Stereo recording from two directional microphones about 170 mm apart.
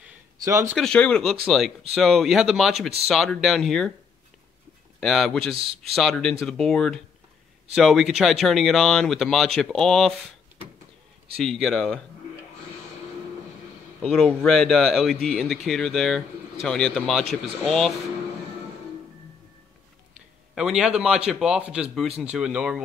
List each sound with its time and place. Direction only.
0.4 s speech: 20° right (ahead or behind)
0.7 s speech: 5° left (ahead or behind)
5.0 s speech: centre (ahead or behind)
11.3 s speech: centre (ahead or behind)
14.0 s speech: 5° left (ahead or behind)
20.5 s speech: 5° right (ahead or behind)